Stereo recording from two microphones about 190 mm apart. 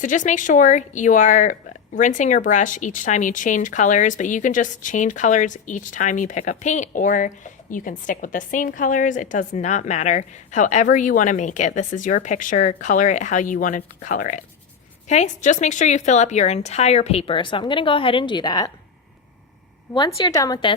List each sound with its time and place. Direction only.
0.0 s speech: 40° left (ahead or behind); by 18.7 s 20° left (ahead or behind)
19.9 s a woman's voice: 20° left (ahead or behind)